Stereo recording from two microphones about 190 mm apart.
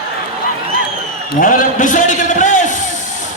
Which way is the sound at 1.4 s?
45° left (ahead or behind).